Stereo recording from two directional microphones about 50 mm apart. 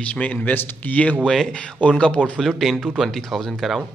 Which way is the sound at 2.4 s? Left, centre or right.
Centre.